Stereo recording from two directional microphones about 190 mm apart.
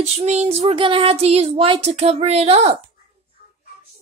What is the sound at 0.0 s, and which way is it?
Child singing, 35° right (ahead or behind).